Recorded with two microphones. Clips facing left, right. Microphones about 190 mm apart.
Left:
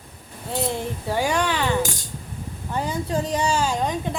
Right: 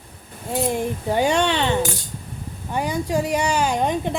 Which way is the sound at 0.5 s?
15° right (ahead or behind).